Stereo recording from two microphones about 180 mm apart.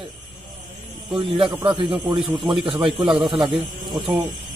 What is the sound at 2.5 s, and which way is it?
Speech, 25° right (ahead or behind).